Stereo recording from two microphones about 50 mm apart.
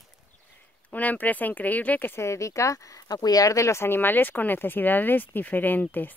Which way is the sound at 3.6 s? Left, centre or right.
Left.